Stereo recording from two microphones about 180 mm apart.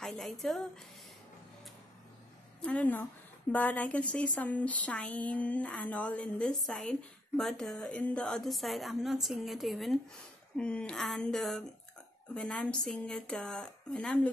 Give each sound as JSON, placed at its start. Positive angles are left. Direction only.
{"t": 0.0, "sound": "a woman's voice", "side_deg": 0}
{"t": 2.6, "sound": "a woman's voice", "side_deg": 5}